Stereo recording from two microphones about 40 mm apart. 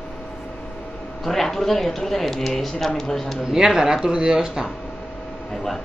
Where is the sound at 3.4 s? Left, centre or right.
Centre.